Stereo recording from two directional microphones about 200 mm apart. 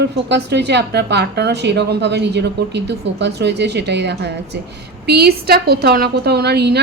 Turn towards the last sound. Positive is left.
turn(degrees=-55)  # may be behind; listen again after turning